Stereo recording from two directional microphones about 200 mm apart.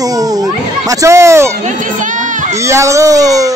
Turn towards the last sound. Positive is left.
turn(degrees=-15)  # may be behind; listen again after turning